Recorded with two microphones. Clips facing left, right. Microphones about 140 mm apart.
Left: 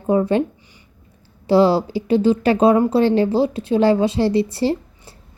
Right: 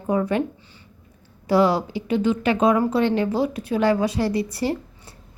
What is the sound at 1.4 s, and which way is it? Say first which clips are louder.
A woman's voice: left 4 dB; 30° left (ahead or behind).